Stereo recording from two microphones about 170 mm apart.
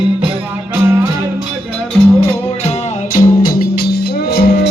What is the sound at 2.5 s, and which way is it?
Music, 35° left (ahead or behind).